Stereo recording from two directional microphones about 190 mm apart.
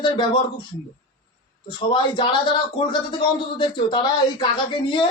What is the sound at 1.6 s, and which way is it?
Speech, 25° left (ahead or behind).